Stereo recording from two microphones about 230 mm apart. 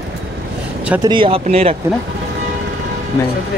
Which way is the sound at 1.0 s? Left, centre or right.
Right.